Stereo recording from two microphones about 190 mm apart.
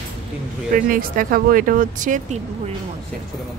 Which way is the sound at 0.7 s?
45° right (ahead or behind).